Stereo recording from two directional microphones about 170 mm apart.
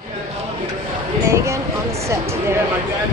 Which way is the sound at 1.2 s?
15° right (ahead or behind).